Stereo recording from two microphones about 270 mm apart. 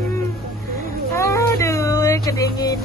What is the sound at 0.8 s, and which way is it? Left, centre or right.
Speech, centre.